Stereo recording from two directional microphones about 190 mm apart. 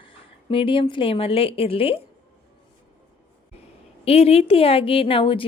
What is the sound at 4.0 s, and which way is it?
Speech, 30° left (ahead or behind).